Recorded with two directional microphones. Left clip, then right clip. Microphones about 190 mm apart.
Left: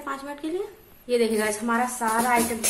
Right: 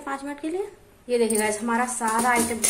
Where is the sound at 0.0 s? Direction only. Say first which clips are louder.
Right 1 dB; 10° right (ahead or behind).